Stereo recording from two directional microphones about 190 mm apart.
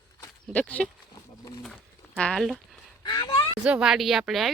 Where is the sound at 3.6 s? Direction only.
5° right (ahead or behind).